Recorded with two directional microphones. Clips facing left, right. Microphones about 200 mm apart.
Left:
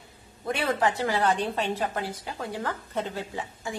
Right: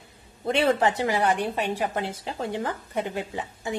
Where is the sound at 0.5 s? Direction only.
25° right (ahead or behind).